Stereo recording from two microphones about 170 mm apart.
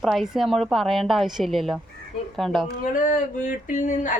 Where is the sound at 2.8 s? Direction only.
50° left (ahead or behind).